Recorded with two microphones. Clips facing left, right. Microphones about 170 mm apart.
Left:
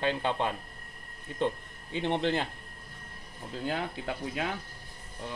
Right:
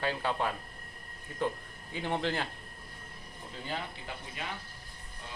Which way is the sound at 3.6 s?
70° left (ahead or behind).